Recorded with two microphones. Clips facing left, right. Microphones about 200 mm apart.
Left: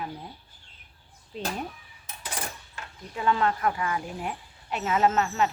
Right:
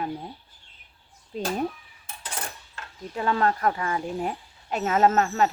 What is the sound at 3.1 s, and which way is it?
Speech, 40° right (ahead or behind).